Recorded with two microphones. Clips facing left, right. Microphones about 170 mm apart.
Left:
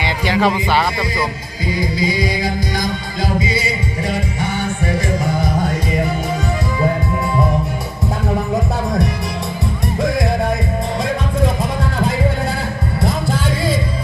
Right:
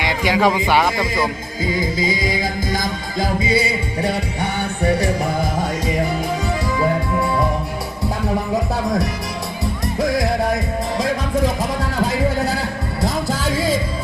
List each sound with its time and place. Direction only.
0.3 s a man's voice: 10° right (ahead or behind)
2.4 s music: 45° right (ahead or behind)